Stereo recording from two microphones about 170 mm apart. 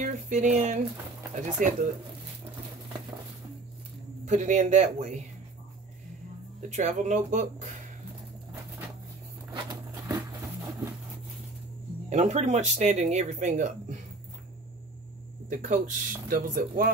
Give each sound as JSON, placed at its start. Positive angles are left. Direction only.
{"t": 0.0, "sound": "speech", "side_deg": -45}
{"t": 4.3, "sound": "speech", "side_deg": -45}
{"t": 6.7, "sound": "speech", "side_deg": -45}
{"t": 10.0, "sound": "a sound", "side_deg": -20}
{"t": 12.1, "sound": "speech", "side_deg": -40}
{"t": 15.5, "sound": "speech", "side_deg": -50}